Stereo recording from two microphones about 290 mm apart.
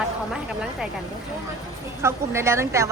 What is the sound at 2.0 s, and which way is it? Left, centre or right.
Speech, centre.